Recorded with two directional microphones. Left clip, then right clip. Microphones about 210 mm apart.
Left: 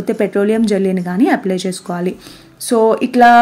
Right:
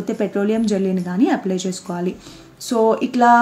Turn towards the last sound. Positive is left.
turn(degrees=30)  # may be behind; listen again after turning